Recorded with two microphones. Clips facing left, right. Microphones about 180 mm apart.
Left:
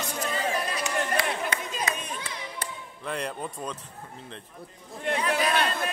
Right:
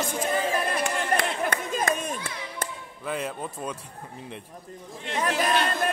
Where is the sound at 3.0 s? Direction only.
5° right (ahead or behind).